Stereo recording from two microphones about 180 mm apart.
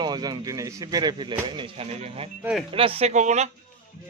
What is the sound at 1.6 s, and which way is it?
Speech, 35° right (ahead or behind).